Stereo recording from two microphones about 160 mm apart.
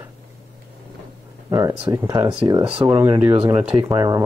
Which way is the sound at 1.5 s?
20° right (ahead or behind).